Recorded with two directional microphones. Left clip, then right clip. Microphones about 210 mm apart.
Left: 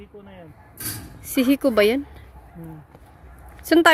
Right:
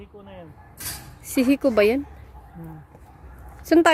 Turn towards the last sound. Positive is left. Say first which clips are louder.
# even
turn(degrees=5)  # may be behind; listen again after turning